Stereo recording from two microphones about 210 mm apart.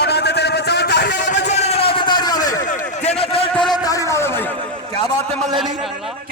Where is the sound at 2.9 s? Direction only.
30° left (ahead or behind).